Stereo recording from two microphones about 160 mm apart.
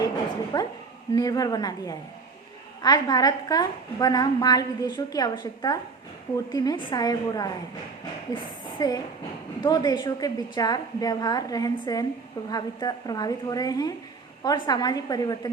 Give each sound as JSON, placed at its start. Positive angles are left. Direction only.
{"t": 0.5, "sound": "a woman's voice", "side_deg": 25}
{"t": 8.8, "sound": "a woman's voice", "side_deg": 25}